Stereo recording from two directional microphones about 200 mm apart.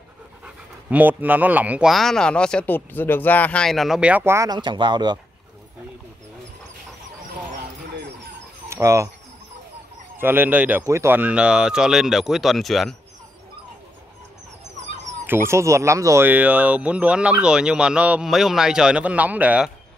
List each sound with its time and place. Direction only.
0.8 s speech: 10° right (ahead or behind)
8.6 s speech: 15° right (ahead or behind)
10.1 s speech: 10° right (ahead or behind)
15.2 s speech: 10° right (ahead or behind)